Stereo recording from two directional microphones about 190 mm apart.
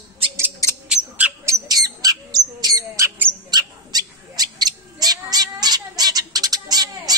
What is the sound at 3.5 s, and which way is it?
Cat, 20° right (ahead or behind).